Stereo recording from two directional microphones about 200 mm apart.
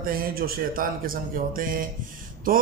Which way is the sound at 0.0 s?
45° right (ahead or behind).